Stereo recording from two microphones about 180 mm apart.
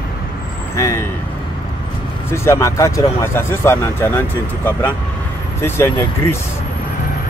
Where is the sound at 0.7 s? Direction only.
15° left (ahead or behind).